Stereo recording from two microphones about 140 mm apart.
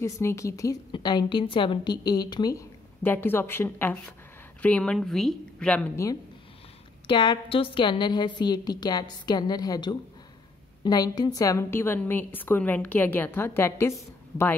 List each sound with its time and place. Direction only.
0.0 s a woman's voice: 20° left (ahead or behind)
0.9 s a woman's voice: 35° left (ahead or behind)
3.0 s a woman's voice: 15° left (ahead or behind)
7.1 s a woman's voice: 35° left (ahead or behind); by 14.5 s 20° left (ahead or behind)